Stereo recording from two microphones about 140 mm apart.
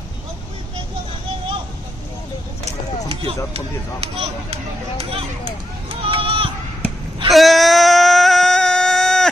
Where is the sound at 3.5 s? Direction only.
45° right (ahead or behind).